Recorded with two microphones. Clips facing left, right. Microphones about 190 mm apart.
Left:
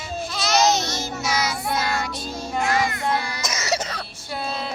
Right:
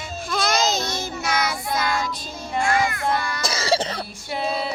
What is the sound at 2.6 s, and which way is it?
Child singing, 20° left (ahead or behind).